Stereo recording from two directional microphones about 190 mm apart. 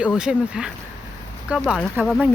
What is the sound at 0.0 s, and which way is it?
A woman's voice, 5° right (ahead or behind).